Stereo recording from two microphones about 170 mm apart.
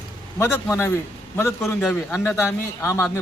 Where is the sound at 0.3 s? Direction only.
15° left (ahead or behind).